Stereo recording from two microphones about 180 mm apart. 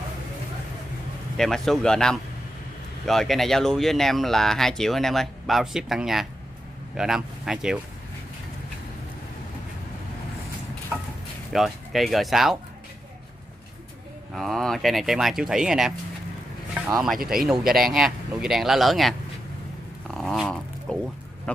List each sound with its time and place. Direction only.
1.3 s speech: centre (ahead or behind)
10.9 s a sound: 5° right (ahead or behind)
11.5 s speech: centre (ahead or behind)
14.3 s speech: centre (ahead or behind)
17.2 s speech: 55° right (ahead or behind)
17.7 s speech: centre (ahead or behind)
20.1 s dog: centre (ahead or behind)